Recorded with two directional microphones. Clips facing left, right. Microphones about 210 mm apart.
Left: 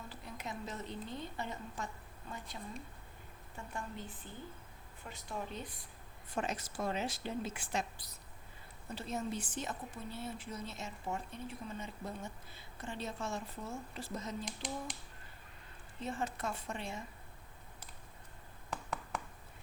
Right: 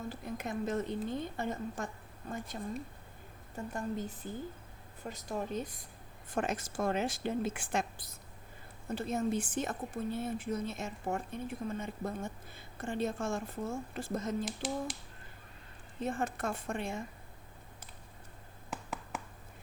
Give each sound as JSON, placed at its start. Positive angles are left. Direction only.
{"t": 0.1, "sound": "a woman's voice", "side_deg": -50}
{"t": 3.7, "sound": "a woman's voice", "side_deg": -40}
{"t": 14.4, "sound": "speech", "side_deg": -5}
{"t": 16.0, "sound": "a woman's voice", "side_deg": -50}
{"t": 18.7, "sound": "a sound", "side_deg": -5}